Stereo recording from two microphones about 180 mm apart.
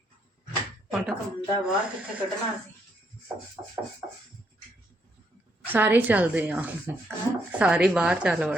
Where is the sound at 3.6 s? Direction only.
20° right (ahead or behind).